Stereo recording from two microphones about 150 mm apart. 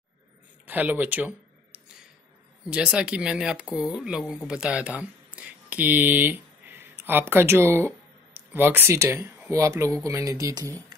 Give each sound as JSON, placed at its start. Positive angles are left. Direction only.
{"t": 0.7, "sound": "speech", "side_deg": -10}